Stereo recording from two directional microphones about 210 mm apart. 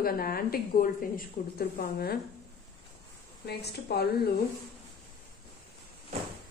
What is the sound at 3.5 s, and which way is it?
Speech, 50° left (ahead or behind).